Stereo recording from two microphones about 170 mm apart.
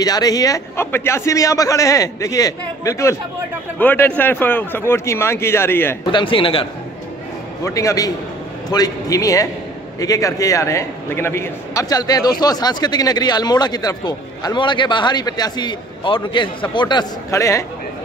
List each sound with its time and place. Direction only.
0.0 s a man's voice: 20° left (ahead or behind)
6.1 s a man's voice: 30° left (ahead or behind)
7.6 s a man's voice: 20° left (ahead or behind)